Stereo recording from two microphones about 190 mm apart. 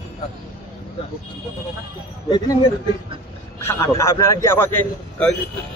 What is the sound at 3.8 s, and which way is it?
A man's voice, 15° left (ahead or behind).